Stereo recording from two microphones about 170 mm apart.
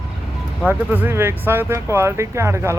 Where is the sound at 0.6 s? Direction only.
10° right (ahead or behind).